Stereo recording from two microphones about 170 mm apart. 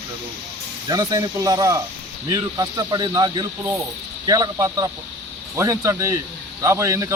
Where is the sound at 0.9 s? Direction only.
20° right (ahead or behind).